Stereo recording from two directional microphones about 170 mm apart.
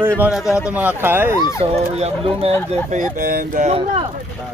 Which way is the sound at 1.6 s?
35° right (ahead or behind).